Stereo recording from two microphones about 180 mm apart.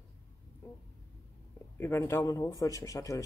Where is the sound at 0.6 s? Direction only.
15° left (ahead or behind).